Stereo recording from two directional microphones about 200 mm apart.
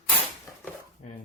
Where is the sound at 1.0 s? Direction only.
35° left (ahead or behind).